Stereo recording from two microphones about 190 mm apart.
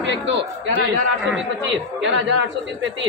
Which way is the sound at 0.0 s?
70° right (ahead or behind).